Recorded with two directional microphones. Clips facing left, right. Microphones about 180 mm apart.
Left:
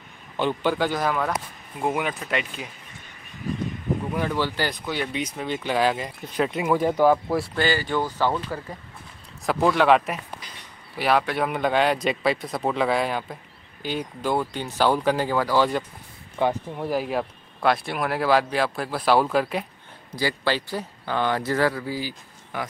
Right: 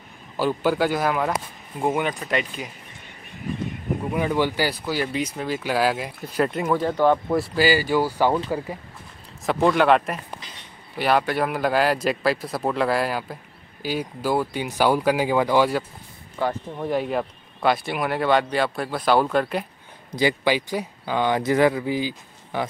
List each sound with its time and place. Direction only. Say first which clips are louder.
0.4 s speech: right 2 dB; 5° right (ahead or behind)
4.1 s speech: right 6 dB; 10° right (ahead or behind)
9.5 s speech: right 1 dB; centre (ahead or behind); by 15.7 s 15° right (ahead or behind)
16.3 s speech: left 2 dB; 15° left (ahead or behind)
20.2 s speech: right 4 dB; 15° right (ahead or behind)